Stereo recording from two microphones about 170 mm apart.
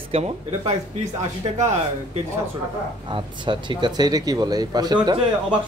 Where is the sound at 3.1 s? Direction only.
30° right (ahead or behind).